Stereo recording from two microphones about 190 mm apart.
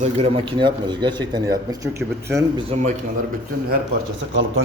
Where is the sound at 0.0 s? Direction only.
30° right (ahead or behind); by 2.6 s 15° right (ahead or behind).